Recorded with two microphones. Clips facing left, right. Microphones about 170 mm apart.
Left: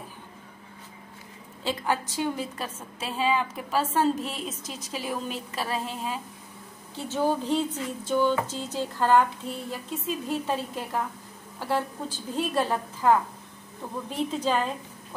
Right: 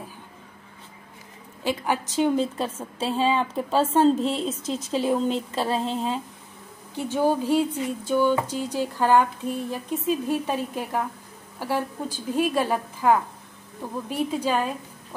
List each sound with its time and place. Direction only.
1.6 s a woman's voice: 15° right (ahead or behind)
7.0 s speech: 15° right (ahead or behind)